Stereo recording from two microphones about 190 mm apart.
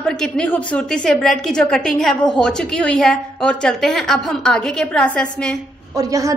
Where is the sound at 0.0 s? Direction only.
5° left (ahead or behind).